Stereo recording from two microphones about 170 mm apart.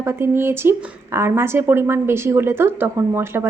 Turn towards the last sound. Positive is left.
turn(degrees=-15)  # may be behind; listen again after turning